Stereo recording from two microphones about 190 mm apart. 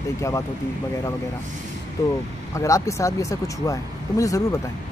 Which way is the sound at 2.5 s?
15° left (ahead or behind).